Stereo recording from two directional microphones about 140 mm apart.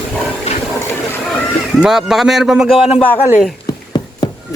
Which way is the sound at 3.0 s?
15° left (ahead or behind).